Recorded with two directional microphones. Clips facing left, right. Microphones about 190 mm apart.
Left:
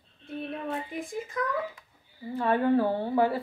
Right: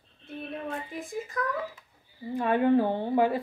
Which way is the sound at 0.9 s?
Centre (ahead or behind).